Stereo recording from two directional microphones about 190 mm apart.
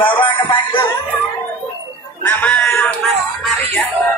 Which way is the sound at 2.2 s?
10° left (ahead or behind).